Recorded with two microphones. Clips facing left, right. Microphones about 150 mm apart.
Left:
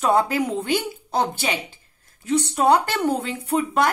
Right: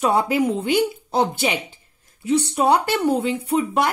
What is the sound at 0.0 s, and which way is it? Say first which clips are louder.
Speech: right 1 dB; 10° right (ahead or behind).